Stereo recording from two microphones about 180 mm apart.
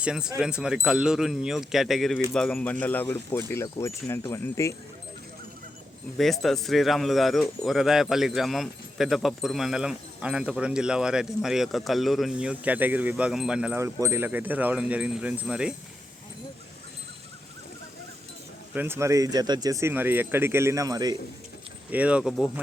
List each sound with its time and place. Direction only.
0.0 s a man's voice: 5° right (ahead or behind); by 4.7 s 15° left (ahead or behind)
6.1 s a man's voice: centre (ahead or behind)
18.7 s speech: 10° right (ahead or behind)
21.8 s speech: 10° right (ahead or behind)